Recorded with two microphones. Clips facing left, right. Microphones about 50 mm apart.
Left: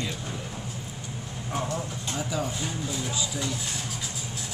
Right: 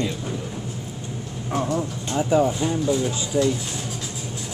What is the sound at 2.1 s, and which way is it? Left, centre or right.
Speech, right.